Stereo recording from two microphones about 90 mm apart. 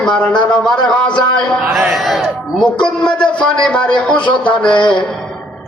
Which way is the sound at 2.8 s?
10° left (ahead or behind).